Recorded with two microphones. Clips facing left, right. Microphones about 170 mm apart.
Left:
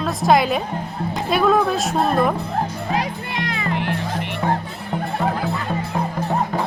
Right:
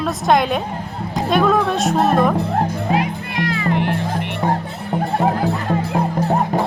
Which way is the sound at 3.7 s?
50° right (ahead or behind).